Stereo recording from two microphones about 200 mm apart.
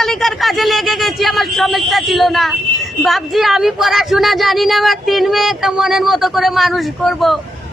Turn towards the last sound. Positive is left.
turn(degrees=0)  # may be behind; listen again after turning